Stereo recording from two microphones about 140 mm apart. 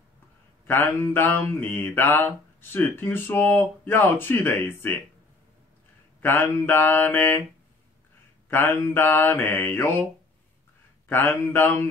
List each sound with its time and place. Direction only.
0.7 s mantra: 15° left (ahead or behind)
6.2 s mantra: 15° left (ahead or behind)
8.5 s mantra: 15° left (ahead or behind)
11.1 s mantra: 15° left (ahead or behind)